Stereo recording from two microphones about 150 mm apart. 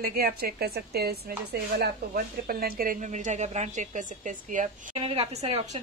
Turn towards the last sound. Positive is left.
turn(degrees=-45)  # may be behind; listen again after turning